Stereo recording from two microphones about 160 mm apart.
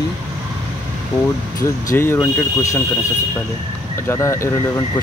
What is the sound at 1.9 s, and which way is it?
Speech, 15° left (ahead or behind).